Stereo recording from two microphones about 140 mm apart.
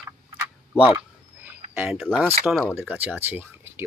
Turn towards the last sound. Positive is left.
turn(degrees=-15)  # may be behind; listen again after turning